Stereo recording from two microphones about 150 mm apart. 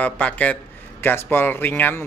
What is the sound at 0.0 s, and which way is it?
A man's voice, 10° left (ahead or behind).